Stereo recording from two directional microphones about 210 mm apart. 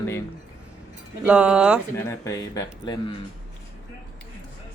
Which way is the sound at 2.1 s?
15° left (ahead or behind).